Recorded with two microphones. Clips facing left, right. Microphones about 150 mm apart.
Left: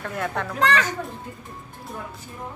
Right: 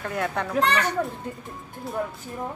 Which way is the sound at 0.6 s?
90° left.